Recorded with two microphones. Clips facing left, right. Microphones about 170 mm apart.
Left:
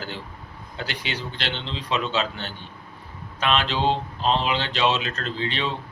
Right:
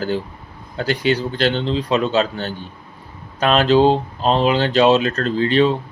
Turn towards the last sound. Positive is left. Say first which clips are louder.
# right 12 dB
turn(degrees=-45)  # may be behind; listen again after turning